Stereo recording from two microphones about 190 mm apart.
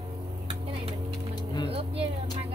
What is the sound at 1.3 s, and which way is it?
Vehicle, 20° left (ahead or behind).